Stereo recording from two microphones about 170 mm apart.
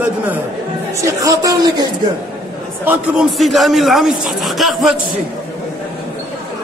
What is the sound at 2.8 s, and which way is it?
A man's voice, 10° right (ahead or behind).